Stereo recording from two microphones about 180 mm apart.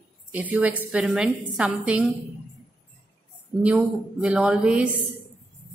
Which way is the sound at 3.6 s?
5° right (ahead or behind).